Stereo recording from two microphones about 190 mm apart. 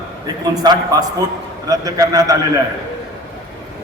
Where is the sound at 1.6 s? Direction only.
20° right (ahead or behind).